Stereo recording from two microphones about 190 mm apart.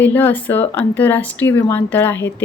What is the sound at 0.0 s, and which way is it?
A woman's voice, 10° left (ahead or behind).